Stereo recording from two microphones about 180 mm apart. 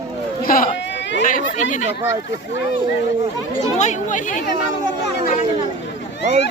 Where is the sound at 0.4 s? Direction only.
50° left (ahead or behind).